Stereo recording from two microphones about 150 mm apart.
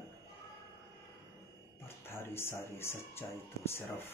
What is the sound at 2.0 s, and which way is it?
Speech, 15° left (ahead or behind).